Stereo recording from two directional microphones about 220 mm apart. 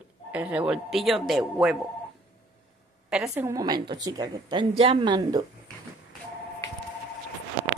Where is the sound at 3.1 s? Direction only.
5° right (ahead or behind).